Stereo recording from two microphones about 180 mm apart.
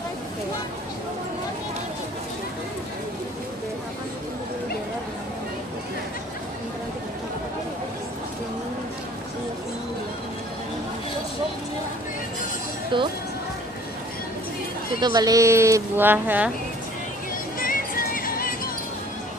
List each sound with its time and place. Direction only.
12.9 s speech: 25° right (ahead or behind)
15.0 s speech: 25° right (ahead or behind)
17.6 s music: 50° left (ahead or behind)